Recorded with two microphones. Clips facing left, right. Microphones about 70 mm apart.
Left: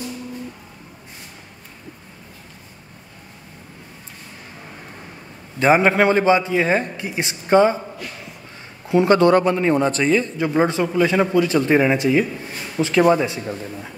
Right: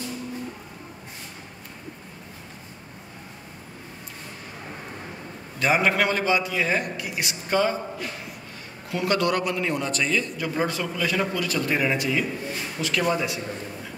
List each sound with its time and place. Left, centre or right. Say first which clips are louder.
5.6 s a man's voice: left 7 dB; left
8.8 s a man's voice: left 10 dB; left